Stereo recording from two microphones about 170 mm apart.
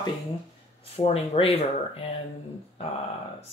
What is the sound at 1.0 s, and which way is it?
Speech, 35° left (ahead or behind).